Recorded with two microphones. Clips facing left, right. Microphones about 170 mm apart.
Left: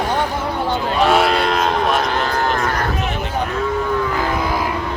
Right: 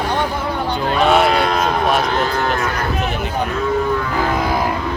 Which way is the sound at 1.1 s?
Centre (ahead or behind).